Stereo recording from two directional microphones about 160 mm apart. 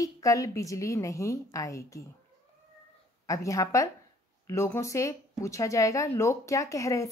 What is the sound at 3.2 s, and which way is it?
Speech, 20° left (ahead or behind).